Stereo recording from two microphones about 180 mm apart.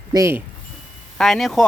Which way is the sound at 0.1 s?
15° right (ahead or behind).